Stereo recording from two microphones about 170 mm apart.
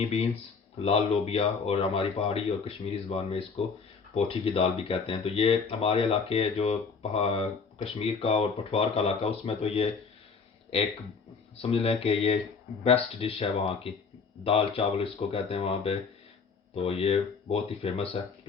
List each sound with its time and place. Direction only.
0.0 s speech: 35° left (ahead or behind)
11.5 s speech: 35° left (ahead or behind)